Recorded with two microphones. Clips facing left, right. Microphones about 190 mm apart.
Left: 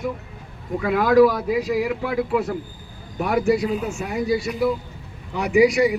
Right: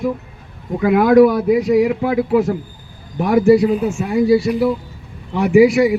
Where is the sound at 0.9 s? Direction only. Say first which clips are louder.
Right 5 dB; 55° right (ahead or behind).